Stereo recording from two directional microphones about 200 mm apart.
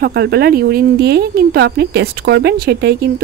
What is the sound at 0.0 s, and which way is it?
Speech, 50° right (ahead or behind).